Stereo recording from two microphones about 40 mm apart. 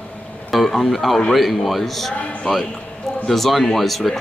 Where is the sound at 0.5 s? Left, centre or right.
Centre.